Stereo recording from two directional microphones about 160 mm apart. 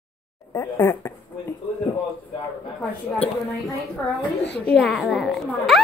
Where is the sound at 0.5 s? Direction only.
20° left (ahead or behind).